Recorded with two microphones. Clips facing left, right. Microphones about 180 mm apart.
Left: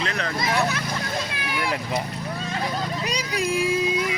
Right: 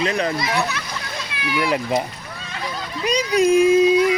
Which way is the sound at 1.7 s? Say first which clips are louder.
Right 7 dB; 20° right (ahead or behind).